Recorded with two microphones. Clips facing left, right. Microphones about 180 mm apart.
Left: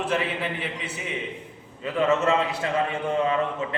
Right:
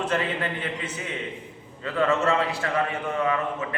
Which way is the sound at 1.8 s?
15° left (ahead or behind).